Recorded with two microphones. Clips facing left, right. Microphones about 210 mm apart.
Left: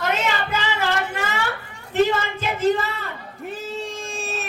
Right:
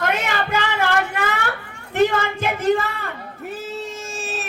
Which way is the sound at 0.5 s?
55° right (ahead or behind).